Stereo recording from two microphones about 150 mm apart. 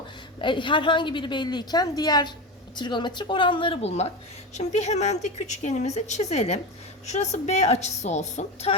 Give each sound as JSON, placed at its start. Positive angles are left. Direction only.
{"t": 0.3, "sound": "a woman's voice", "side_deg": 30}